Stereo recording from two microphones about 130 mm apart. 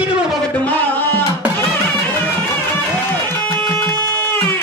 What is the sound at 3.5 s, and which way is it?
Music, 20° left (ahead or behind).